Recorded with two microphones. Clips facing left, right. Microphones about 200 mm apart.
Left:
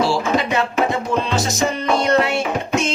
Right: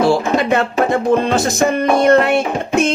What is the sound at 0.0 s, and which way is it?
Music, 55° right (ahead or behind).